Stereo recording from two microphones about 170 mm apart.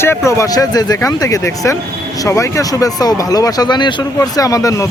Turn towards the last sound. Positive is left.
turn(degrees=20)  # may be behind; listen again after turning